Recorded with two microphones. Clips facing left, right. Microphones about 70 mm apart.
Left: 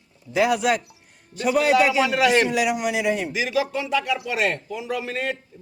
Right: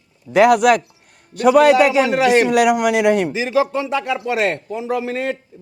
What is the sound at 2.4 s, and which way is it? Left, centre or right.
Speech, right.